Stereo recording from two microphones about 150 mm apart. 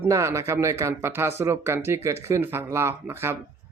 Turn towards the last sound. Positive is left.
turn(degrees=-15)  # may be behind; listen again after turning